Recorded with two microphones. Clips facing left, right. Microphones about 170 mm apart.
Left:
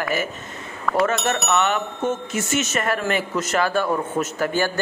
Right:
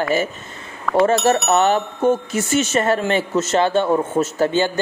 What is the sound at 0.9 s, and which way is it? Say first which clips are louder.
Speech: right 4 dB; centre (ahead or behind).